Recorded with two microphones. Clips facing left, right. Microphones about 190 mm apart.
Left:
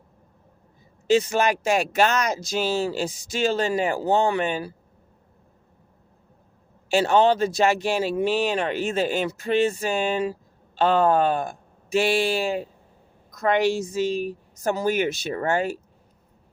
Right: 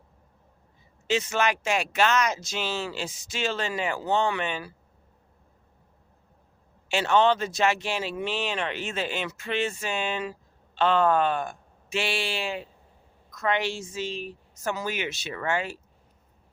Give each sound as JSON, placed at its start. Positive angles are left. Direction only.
{"t": 1.0, "sound": "speech", "side_deg": 35}
{"t": 6.9, "sound": "speech", "side_deg": 35}